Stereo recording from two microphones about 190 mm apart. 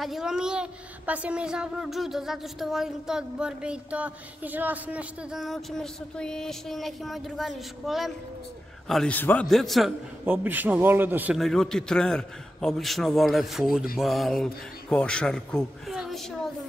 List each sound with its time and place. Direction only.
0.0 s a child's voice: centre (ahead or behind)